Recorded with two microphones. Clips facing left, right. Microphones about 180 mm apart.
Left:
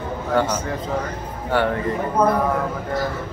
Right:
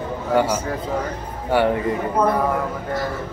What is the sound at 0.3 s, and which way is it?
Speech, 10° right (ahead or behind).